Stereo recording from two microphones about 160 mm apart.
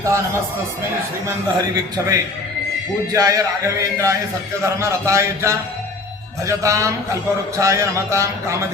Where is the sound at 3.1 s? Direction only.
20° right (ahead or behind).